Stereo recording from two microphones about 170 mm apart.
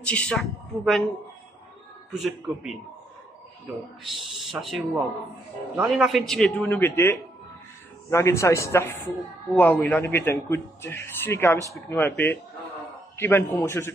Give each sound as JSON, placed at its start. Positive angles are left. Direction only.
{"t": 0.0, "sound": "a man's voice", "side_deg": 5}
{"t": 2.1, "sound": "a man's voice", "side_deg": 0}
{"t": 4.0, "sound": "a man's voice", "side_deg": 0}